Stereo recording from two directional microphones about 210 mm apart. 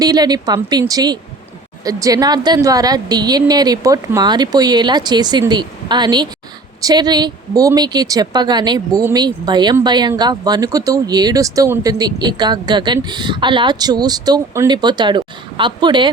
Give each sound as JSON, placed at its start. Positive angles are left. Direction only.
{"t": 0.0, "sound": "speech", "side_deg": -20}